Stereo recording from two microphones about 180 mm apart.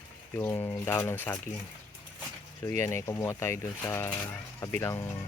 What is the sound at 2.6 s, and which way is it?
Speech, 15° left (ahead or behind).